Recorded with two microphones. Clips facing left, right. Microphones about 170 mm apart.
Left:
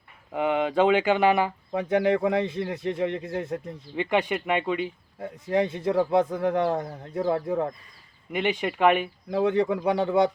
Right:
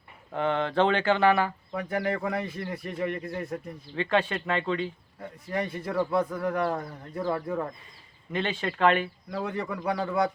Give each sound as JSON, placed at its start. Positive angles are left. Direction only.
{"t": 0.3, "sound": "speech", "side_deg": 10}
{"t": 5.2, "sound": "speech", "side_deg": 25}